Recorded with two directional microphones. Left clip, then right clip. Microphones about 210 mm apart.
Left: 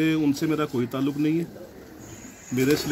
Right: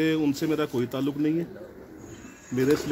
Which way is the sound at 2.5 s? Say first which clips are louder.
Left 1 dB; 30° left (ahead or behind).